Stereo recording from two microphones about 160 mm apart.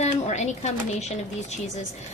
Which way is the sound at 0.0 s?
45° left (ahead or behind).